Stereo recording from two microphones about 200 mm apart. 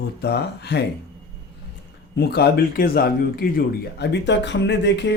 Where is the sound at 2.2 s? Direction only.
55° left (ahead or behind).